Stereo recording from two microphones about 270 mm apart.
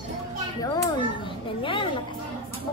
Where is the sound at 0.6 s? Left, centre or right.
Centre.